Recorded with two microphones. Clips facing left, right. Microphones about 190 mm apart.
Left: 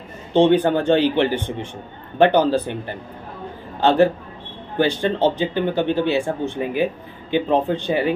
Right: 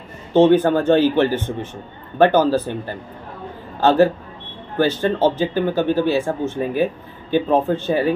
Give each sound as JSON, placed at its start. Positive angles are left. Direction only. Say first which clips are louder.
{"t": 0.3, "sound": "speech", "louder": "right 2 dB", "side_deg": 15}